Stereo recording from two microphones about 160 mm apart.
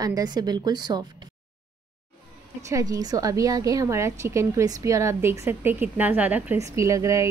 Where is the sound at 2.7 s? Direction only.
20° right (ahead or behind).